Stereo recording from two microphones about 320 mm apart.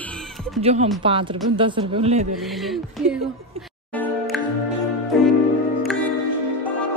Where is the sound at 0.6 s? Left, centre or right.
Centre.